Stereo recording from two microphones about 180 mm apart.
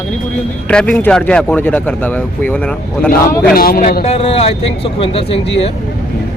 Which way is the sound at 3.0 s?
10° left (ahead or behind).